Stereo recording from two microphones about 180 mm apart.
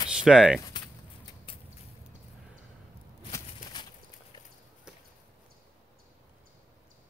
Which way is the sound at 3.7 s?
20° left (ahead or behind).